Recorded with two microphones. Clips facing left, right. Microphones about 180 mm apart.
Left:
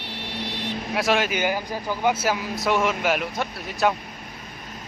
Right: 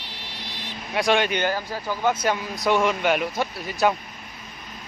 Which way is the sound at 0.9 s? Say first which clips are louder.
Right 2 dB; centre (ahead or behind).